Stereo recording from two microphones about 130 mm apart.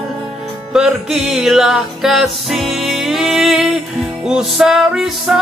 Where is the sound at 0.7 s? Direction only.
5° right (ahead or behind).